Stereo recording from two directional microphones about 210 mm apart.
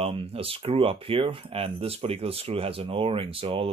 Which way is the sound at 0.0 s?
25° right (ahead or behind).